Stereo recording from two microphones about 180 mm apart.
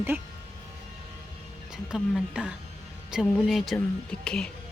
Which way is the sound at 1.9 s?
5° right (ahead or behind).